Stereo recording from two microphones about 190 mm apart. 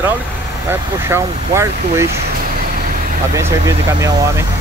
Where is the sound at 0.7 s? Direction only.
15° right (ahead or behind).